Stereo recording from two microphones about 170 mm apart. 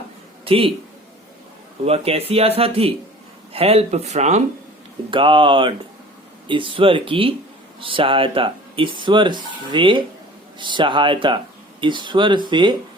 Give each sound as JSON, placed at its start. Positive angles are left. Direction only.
{"t": 0.4, "sound": "a man's voice", "side_deg": -35}
{"t": 1.8, "sound": "speech", "side_deg": -35}
{"t": 5.1, "sound": "speech", "side_deg": -30}